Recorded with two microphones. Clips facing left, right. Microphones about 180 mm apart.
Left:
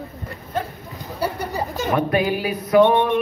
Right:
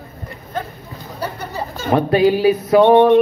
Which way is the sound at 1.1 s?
10° left (ahead or behind).